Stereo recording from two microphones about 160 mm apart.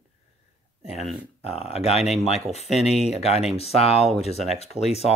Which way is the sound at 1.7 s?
40° left (ahead or behind).